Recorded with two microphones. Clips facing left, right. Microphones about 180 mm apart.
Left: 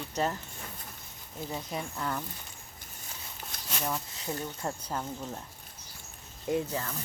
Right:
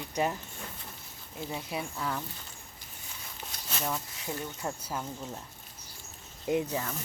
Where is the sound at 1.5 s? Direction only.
10° right (ahead or behind).